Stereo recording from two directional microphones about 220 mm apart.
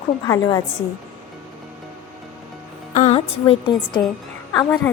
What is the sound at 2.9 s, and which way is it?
A woman's voice, 30° left (ahead or behind).